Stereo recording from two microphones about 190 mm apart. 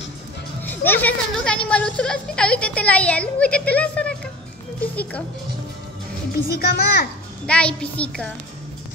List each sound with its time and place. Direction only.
0.7 s a woman's voice: 10° left (ahead or behind)
6.3 s a child's voice: 55° left (ahead or behind)
7.4 s a woman's voice: 5° left (ahead or behind)